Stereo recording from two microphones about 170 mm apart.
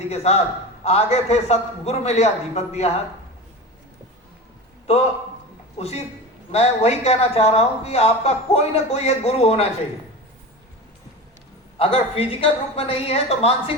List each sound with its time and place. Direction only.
0.1 s a man's voice: 40° left (ahead or behind)
5.7 s a man's voice: 40° left (ahead or behind)
11.8 s a man's voice: 35° left (ahead or behind)